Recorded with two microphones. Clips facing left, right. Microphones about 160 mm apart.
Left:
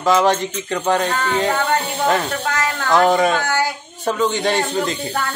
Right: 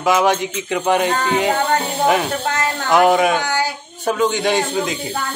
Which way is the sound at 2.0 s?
15° right (ahead or behind).